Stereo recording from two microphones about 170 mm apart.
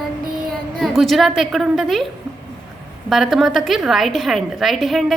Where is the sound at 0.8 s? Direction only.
Centre (ahead or behind).